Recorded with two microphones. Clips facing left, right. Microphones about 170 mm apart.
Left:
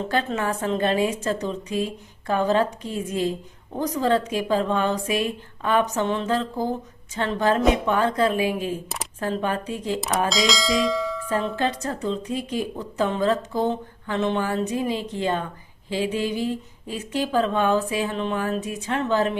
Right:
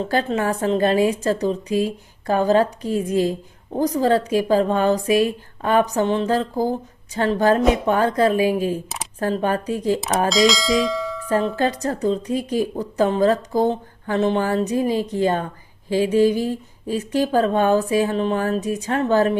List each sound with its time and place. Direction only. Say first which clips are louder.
0.1 s a woman's voice: right 4 dB; 35° right (ahead or behind)
10.2 s speech: right 8 dB; centre (ahead or behind)
11.5 s a woman's voice: right 4 dB; 40° right (ahead or behind)